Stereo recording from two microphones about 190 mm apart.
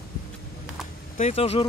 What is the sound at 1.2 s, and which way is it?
Speech, 35° left (ahead or behind).